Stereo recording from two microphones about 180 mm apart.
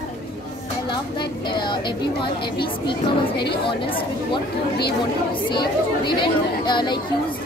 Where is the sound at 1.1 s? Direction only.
25° left (ahead or behind).